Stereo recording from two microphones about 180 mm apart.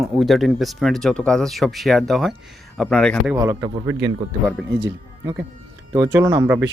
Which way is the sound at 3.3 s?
15° right (ahead or behind).